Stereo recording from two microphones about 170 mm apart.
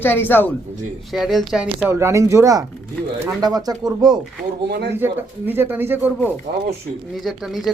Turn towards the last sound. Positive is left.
turn(degrees=0)  # may be behind; listen again after turning